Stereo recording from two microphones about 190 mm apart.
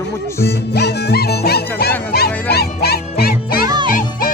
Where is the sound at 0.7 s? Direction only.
60° left (ahead or behind).